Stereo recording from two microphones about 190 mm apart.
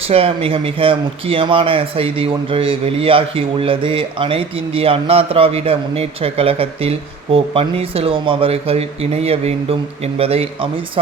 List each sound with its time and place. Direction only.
0.1 s a man's voice: 30° right (ahead or behind)